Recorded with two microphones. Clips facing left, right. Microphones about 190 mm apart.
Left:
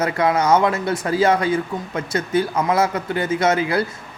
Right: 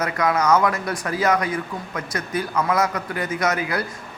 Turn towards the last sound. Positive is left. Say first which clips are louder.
# left 5 dB
turn(degrees=25)  # may be behind; listen again after turning